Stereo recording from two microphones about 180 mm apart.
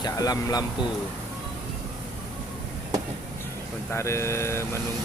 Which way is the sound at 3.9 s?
15° left (ahead or behind).